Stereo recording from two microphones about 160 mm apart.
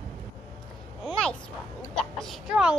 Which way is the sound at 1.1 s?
5° left (ahead or behind).